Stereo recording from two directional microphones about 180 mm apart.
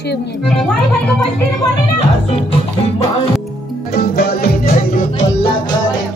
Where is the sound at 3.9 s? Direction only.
55° left (ahead or behind).